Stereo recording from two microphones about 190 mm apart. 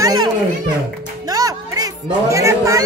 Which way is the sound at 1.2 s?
20° right (ahead or behind).